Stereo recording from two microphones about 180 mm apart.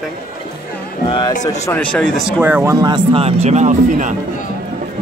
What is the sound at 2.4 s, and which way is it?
Speech, 15° right (ahead or behind).